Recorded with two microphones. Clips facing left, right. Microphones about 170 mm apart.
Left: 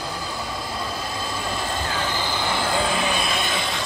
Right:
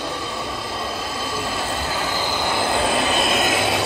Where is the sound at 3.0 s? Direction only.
45° right (ahead or behind).